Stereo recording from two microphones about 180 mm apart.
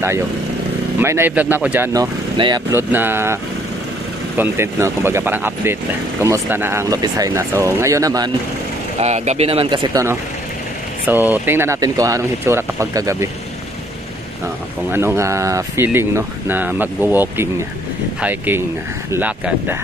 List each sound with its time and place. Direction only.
0.9 s speech: 15° right (ahead or behind)
2.0 s speech: 25° right (ahead or behind)
2.7 s speech: 10° right (ahead or behind)
4.4 s speech: 15° right (ahead or behind)
9.0 s speech: 40° right (ahead or behind)
11.1 s speech: 10° right (ahead or behind)
14.9 s speech: 15° right (ahead or behind)